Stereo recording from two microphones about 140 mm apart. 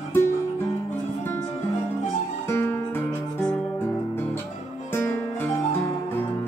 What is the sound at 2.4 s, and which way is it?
Music, 15° left (ahead or behind).